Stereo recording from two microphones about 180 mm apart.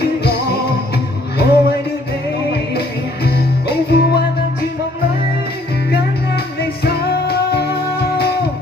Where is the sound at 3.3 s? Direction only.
65° left (ahead or behind).